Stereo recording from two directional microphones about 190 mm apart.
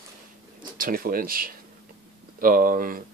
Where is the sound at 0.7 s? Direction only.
50° right (ahead or behind).